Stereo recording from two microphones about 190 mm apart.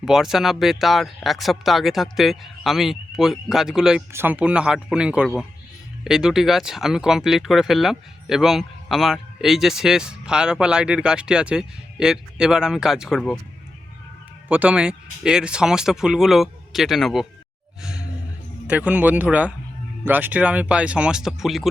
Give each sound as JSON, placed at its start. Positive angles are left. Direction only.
{"t": 0.0, "sound": "speech", "side_deg": 0}
{"t": 14.4, "sound": "speech", "side_deg": -10}
{"t": 18.7, "sound": "speech", "side_deg": -5}